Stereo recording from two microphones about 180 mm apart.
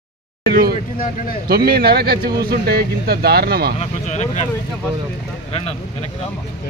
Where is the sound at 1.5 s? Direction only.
60° right (ahead or behind).